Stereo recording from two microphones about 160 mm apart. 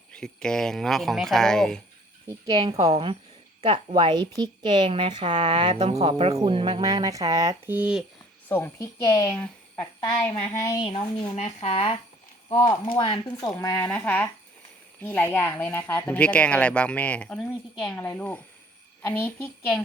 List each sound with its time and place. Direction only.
0.1 s speech: 5° left (ahead or behind)
2.2 s a woman's voice: 25° right (ahead or behind)
7.8 s speech: 5° right (ahead or behind)
8.4 s a woman's voice: 15° left (ahead or behind)
9.3 s a sound: 10° left (ahead or behind)
10.8 s a woman's voice: 35° left (ahead or behind)
13.8 s speech: 10° left (ahead or behind)